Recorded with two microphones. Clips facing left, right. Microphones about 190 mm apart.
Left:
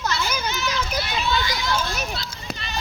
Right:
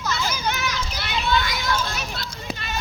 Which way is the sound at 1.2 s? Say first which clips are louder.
Right 4 dB; 55° right (ahead or behind).